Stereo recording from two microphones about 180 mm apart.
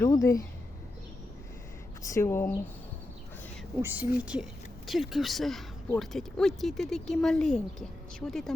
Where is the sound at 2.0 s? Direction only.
15° left (ahead or behind).